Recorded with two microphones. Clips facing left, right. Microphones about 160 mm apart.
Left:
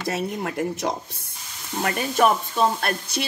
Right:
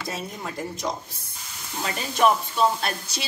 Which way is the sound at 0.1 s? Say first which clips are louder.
Left 8 dB; 70° left (ahead or behind).